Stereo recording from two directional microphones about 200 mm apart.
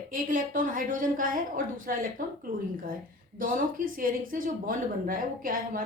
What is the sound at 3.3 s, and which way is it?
A woman's voice, 45° right (ahead or behind).